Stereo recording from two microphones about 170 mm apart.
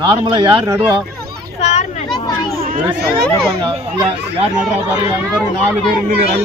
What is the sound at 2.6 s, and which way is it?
Speech, 60° right (ahead or behind).